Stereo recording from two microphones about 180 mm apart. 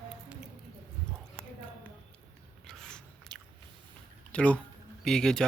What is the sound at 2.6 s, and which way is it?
Biting, 5° left (ahead or behind).